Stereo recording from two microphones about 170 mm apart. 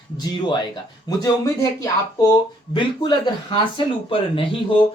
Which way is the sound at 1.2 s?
20° left (ahead or behind).